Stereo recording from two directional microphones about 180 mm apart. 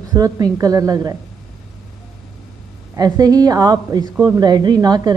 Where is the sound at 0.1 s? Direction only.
20° right (ahead or behind).